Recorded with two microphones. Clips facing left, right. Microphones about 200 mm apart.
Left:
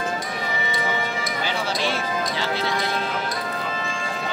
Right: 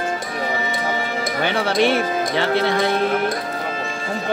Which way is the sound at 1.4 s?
60° right (ahead or behind).